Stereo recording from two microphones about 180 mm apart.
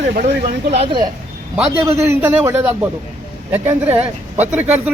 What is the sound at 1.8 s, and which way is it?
A man's voice, 15° right (ahead or behind).